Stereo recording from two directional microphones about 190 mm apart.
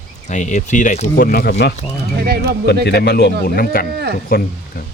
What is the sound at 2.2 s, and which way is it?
Speech, 55° right (ahead or behind).